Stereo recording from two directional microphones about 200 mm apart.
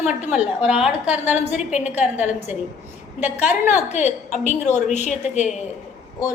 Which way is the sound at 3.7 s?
35° left (ahead or behind).